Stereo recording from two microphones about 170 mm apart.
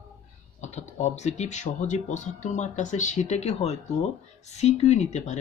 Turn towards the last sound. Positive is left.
turn(degrees=45)  # may be behind; listen again after turning